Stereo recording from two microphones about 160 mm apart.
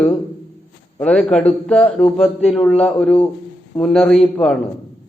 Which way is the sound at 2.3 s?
40° left (ahead or behind).